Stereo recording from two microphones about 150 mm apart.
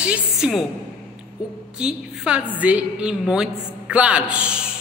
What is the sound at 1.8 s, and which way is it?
A man's voice, 5° right (ahead or behind).